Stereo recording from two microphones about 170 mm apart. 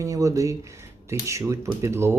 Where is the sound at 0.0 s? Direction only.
20° right (ahead or behind).